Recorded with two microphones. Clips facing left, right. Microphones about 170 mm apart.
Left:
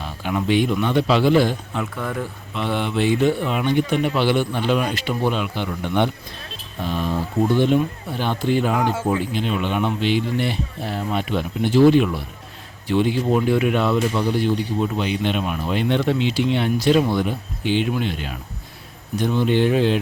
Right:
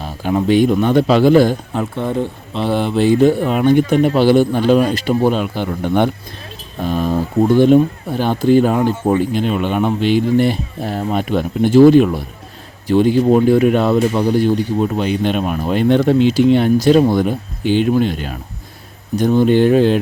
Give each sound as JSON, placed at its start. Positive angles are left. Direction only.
{"t": 0.0, "sound": "speech", "side_deg": -40}
{"t": 2.0, "sound": "speech", "side_deg": -25}